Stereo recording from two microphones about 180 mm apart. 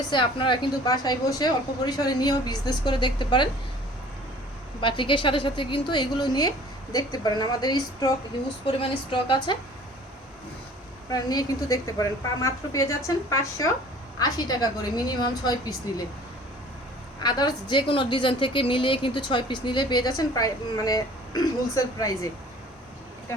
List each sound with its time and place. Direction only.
0.1 s a woman's voice: 25° left (ahead or behind)
4.8 s a woman's voice: 25° left (ahead or behind)
11.1 s a woman's voice: 20° left (ahead or behind)
17.2 s a woman's voice: 25° left (ahead or behind)